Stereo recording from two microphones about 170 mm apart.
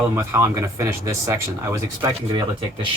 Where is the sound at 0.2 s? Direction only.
15° right (ahead or behind).